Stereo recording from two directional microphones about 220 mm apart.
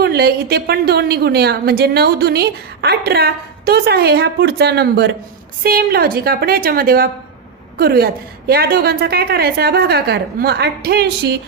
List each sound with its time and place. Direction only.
0.0 s a woman's voice: 45° right (ahead or behind)